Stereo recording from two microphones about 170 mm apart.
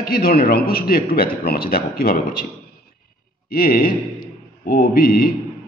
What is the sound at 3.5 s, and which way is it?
A man's voice, 55° left (ahead or behind).